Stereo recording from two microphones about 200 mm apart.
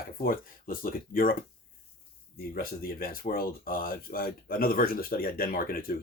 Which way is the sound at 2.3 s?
50° left (ahead or behind).